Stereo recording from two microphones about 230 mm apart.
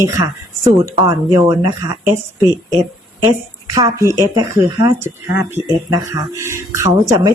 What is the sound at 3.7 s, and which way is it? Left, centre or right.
Speech, centre.